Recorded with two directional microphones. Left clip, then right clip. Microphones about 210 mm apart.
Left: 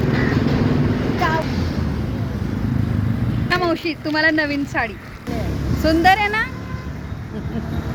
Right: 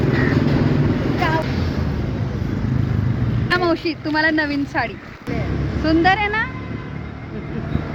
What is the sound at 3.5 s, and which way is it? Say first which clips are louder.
Speech: right 1 dB; 50° left (ahead or behind).